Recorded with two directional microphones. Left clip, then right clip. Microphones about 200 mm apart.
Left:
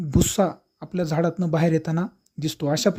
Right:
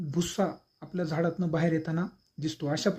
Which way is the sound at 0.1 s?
40° left (ahead or behind).